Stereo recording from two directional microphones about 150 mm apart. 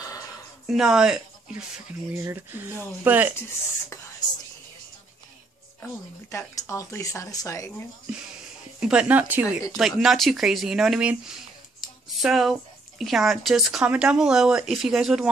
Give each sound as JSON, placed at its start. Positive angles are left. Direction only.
{"t": 0.0, "sound": "a sound", "side_deg": 25}
{"t": 0.7, "sound": "speech", "side_deg": -5}
{"t": 6.3, "sound": "speech", "side_deg": 20}
{"t": 8.7, "sound": "speech", "side_deg": -5}